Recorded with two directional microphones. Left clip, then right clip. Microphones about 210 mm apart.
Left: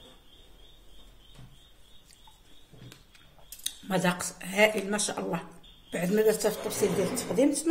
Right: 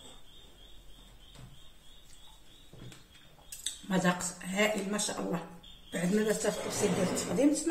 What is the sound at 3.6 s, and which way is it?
Speech, 50° left (ahead or behind).